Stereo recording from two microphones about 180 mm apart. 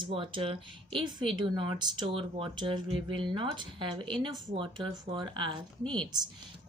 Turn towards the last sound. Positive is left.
turn(degrees=5)  # may be behind; listen again after turning